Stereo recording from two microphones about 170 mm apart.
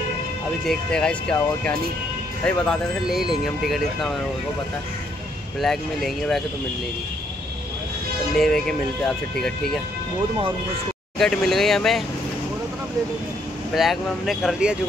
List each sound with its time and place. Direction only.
0.7 s speech: 5° left (ahead or behind)
5.6 s speech: centre (ahead or behind)
8.4 s speech: 5° left (ahead or behind)
11.1 s speech: centre (ahead or behind)
13.7 s speech: centre (ahead or behind)